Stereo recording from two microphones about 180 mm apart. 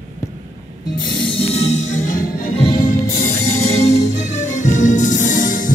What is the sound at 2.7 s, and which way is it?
Music, 50° left (ahead or behind).